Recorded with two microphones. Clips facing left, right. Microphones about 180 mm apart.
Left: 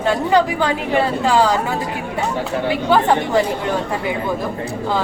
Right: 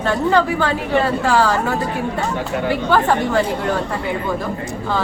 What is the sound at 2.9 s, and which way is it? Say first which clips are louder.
Speech: left 2 dB; 15° left (ahead or behind).